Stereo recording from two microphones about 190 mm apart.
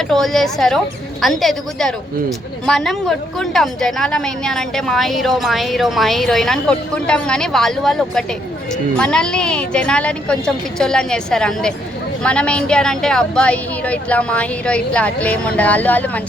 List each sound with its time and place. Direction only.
0.1 s a woman's voice: centre (ahead or behind)